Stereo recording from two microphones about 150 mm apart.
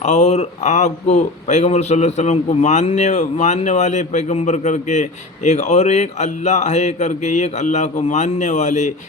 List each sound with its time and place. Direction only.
0.0 s speech: 50° left (ahead or behind)